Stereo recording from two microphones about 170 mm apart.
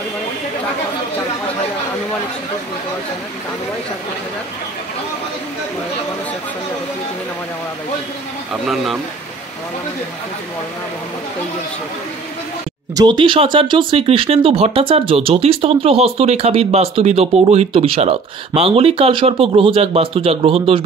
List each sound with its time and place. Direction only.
8.6 s speech: centre (ahead or behind)
12.9 s speech: 25° right (ahead or behind)